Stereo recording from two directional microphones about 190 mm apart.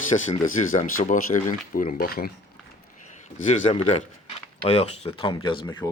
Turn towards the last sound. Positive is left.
turn(degrees=25)  # may be behind; listen again after turning